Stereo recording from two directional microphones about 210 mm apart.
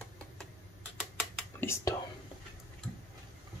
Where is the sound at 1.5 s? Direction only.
10° left (ahead or behind).